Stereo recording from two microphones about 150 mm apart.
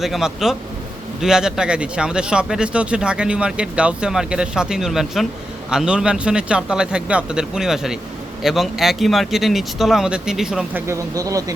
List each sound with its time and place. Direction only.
0.0 s speech: 5° right (ahead or behind)
10.8 s speech: 20° right (ahead or behind)